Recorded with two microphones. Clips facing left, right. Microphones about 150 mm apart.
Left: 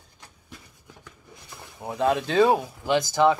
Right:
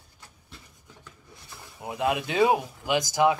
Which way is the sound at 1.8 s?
10° right (ahead or behind).